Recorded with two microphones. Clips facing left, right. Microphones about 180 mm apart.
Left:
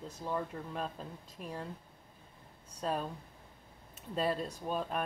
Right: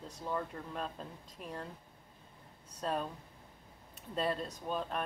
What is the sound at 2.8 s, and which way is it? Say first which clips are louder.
Speech: left 1 dB; 5° left (ahead or behind).